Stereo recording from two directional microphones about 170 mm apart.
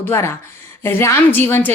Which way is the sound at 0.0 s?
15° left (ahead or behind).